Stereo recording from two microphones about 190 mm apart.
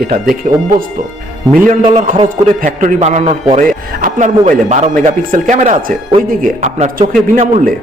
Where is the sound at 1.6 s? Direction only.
45° right (ahead or behind).